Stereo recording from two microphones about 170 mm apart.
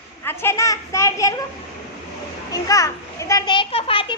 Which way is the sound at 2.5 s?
20° left (ahead or behind).